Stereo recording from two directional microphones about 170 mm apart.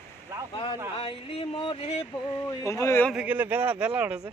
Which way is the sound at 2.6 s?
20° left (ahead or behind).